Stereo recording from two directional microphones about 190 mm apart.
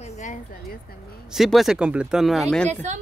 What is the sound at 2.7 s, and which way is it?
Speech, 40° right (ahead or behind).